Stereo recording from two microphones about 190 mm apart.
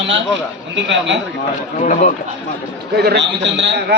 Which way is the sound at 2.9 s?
60° right (ahead or behind).